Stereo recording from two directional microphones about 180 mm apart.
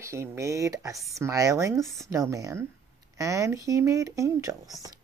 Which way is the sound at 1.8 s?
Centre (ahead or behind).